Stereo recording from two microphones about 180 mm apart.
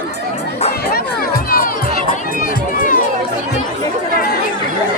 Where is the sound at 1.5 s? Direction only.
55° left (ahead or behind).